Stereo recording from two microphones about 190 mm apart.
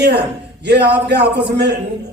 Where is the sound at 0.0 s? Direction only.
60° right (ahead or behind).